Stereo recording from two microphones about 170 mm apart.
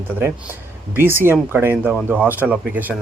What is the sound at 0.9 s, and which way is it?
Speech, 15° right (ahead or behind).